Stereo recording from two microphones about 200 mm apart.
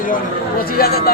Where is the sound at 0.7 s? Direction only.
50° left (ahead or behind).